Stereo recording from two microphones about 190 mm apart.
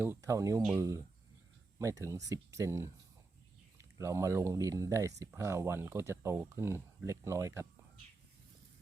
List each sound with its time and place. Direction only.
0.0 s speech: 15° right (ahead or behind)